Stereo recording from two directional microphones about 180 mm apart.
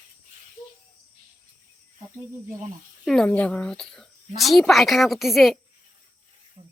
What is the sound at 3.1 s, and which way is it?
Speech, 5° left (ahead or behind).